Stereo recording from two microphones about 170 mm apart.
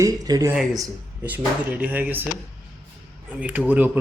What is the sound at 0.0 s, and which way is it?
Speech, 20° right (ahead or behind).